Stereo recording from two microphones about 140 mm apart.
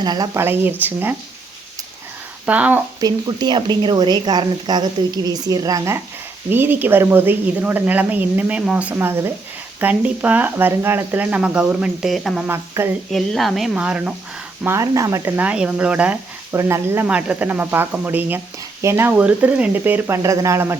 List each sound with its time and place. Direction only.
0.0 s speech: 30° right (ahead or behind)
0.3 s speech: 15° right (ahead or behind)
2.5 s speech: 10° right (ahead or behind)
3.0 s speech: 30° right (ahead or behind); by 12.5 s centre (ahead or behind)
12.5 s speech: 15° right (ahead or behind)
13.1 s speech: centre (ahead or behind)
14.6 s speech: 20° right (ahead or behind)
16.6 s speech: 20° right (ahead or behind)